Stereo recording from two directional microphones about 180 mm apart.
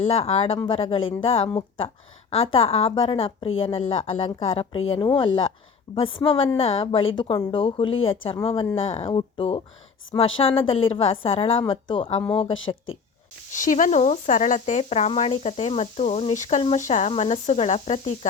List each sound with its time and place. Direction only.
0.1 s speech: 35° left (ahead or behind)
9.0 s speech: 30° left (ahead or behind)
13.5 s speech: 45° left (ahead or behind)